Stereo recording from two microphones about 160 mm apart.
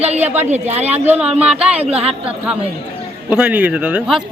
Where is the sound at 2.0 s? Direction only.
40° right (ahead or behind).